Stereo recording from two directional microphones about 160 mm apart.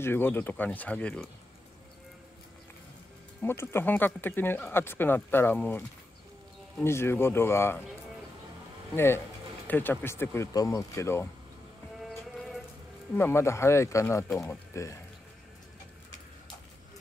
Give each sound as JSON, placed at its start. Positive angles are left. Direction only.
{"t": 0.0, "sound": "speech", "side_deg": 15}
{"t": 3.4, "sound": "speech", "side_deg": 15}
{"t": 8.9, "sound": "speech", "side_deg": 15}
{"t": 12.0, "sound": "music", "side_deg": 0}
{"t": 13.1, "sound": "speech", "side_deg": 15}
{"t": 14.3, "sound": "speech", "side_deg": 0}
{"t": 14.7, "sound": "speech", "side_deg": 20}